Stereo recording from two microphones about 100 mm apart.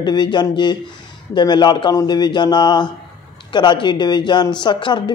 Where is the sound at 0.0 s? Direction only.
45° left (ahead or behind).